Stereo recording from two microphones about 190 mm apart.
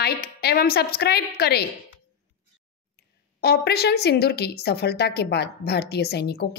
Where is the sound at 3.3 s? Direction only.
60° left (ahead or behind).